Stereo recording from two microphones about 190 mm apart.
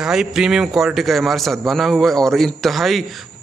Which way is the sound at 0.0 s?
5° right (ahead or behind).